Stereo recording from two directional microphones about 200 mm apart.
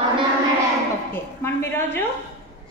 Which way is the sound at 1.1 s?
10° left (ahead or behind).